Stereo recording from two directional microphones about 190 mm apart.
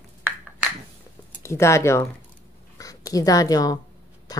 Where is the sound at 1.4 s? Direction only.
15° left (ahead or behind).